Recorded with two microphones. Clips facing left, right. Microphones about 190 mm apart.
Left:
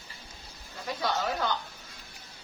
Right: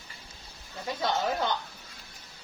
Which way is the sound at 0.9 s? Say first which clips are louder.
Right 2 dB; 25° right (ahead or behind).